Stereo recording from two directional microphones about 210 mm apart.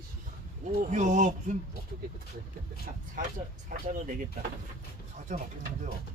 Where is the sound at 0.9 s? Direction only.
35° right (ahead or behind).